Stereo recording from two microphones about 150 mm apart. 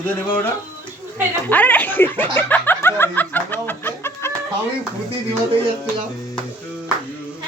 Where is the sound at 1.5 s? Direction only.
10° left (ahead or behind).